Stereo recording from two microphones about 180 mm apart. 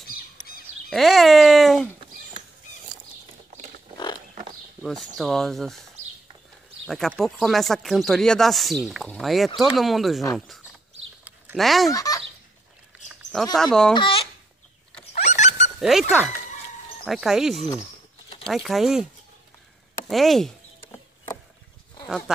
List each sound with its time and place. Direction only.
0.8 s a sound: centre (ahead or behind)
4.8 s speech: centre (ahead or behind)
6.9 s speech: centre (ahead or behind)
11.9 s speech: 20° left (ahead or behind)
13.6 s speech: 5° left (ahead or behind)
13.9 s speech: 30° left (ahead or behind)
15.2 s dog: 40° left (ahead or behind)
15.8 s speech: centre (ahead or behind)
20.1 s speech: centre (ahead or behind)